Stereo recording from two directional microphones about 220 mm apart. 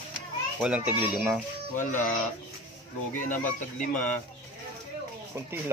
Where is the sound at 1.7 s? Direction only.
35° left (ahead or behind).